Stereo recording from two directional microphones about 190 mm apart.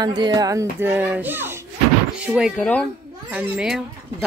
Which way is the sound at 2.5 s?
5° left (ahead or behind).